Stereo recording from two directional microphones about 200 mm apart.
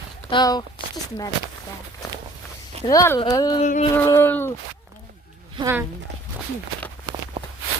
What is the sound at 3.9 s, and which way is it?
Speech, 15° left (ahead or behind).